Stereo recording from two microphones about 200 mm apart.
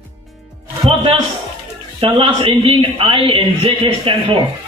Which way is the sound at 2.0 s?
25° right (ahead or behind).